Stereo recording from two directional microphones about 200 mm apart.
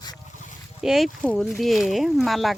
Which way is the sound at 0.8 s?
Centre (ahead or behind).